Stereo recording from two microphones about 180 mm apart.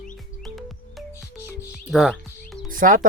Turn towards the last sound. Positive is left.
turn(degrees=-45)  # may be behind; listen again after turning